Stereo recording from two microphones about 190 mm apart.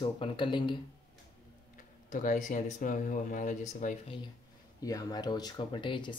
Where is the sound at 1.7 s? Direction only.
45° left (ahead or behind).